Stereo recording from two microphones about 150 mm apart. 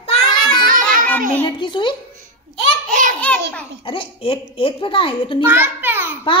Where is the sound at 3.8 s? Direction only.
35° left (ahead or behind).